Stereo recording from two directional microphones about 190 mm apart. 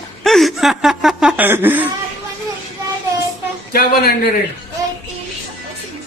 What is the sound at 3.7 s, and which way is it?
Speech, 55° left (ahead or behind).